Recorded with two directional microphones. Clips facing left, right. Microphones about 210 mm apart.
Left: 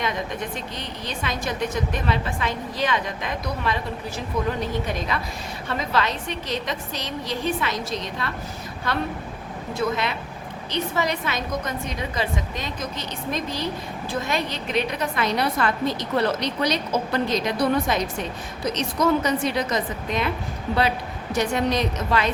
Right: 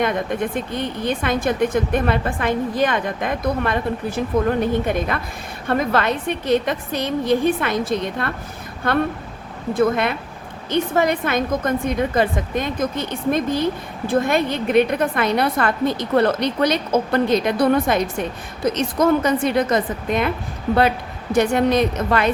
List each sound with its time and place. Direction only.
0.0 s a woman's voice: 55° right (ahead or behind)
21.3 s a woman's voice: 55° right (ahead or behind)